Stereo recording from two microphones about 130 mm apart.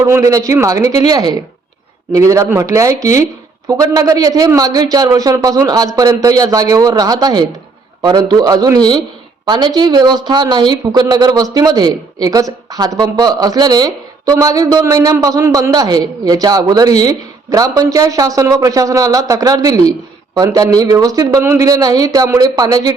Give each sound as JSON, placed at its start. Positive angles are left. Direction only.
{"t": 0.0, "sound": "a man's voice", "side_deg": -25}